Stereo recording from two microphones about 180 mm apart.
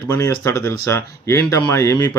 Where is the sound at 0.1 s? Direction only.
15° left (ahead or behind).